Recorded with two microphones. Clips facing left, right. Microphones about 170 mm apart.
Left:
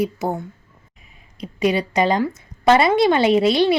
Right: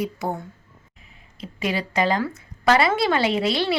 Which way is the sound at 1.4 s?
20° left (ahead or behind).